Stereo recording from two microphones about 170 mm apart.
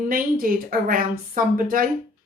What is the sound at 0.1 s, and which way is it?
Speech, 55° right (ahead or behind).